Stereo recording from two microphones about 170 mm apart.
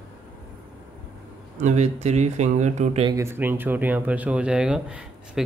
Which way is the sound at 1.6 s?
45° right (ahead or behind).